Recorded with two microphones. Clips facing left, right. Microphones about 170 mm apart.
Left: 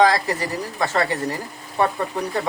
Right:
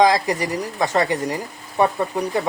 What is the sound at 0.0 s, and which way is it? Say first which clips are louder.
Speech: right 1 dB; 15° right (ahead or behind).